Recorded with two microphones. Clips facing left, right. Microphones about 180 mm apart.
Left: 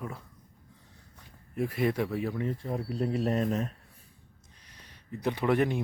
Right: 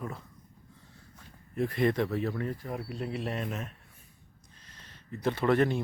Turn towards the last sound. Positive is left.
turn(degrees=15)  # may be behind; listen again after turning